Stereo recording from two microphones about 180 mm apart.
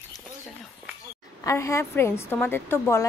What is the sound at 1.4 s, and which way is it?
A woman's voice, 15° left (ahead or behind).